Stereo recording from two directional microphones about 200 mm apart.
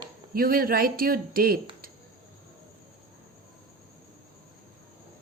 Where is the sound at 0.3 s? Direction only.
45° right (ahead or behind).